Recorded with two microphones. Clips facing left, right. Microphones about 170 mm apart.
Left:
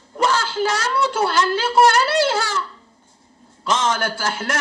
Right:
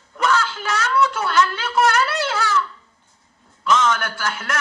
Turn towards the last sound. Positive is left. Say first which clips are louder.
# left 2 dB
turn(degrees=30)  # may be behind; listen again after turning